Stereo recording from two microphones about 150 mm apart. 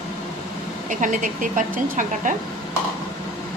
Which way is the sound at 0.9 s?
60° right (ahead or behind).